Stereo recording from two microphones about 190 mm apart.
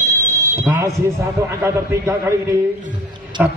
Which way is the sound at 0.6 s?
15° right (ahead or behind).